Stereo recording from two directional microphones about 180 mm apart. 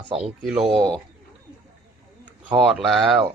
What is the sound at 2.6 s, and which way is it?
Speech, centre (ahead or behind).